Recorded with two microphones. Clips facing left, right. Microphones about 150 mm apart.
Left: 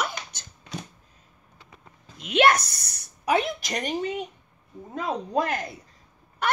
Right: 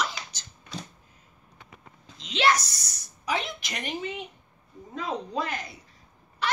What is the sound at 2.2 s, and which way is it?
A woman's voice, 55° left (ahead or behind).